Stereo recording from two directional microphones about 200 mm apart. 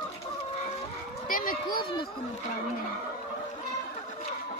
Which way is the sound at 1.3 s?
45° left (ahead or behind).